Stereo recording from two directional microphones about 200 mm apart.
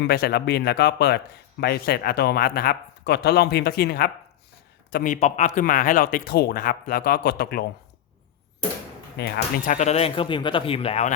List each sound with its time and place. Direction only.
0.0 s speech: 50° left (ahead or behind)
9.1 s speech: 55° left (ahead or behind)
9.7 s speech: 35° left (ahead or behind)